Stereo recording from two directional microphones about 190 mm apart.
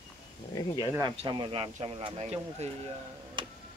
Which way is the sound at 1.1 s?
25° right (ahead or behind).